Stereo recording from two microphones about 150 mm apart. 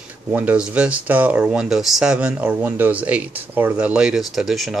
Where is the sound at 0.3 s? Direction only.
10° right (ahead or behind).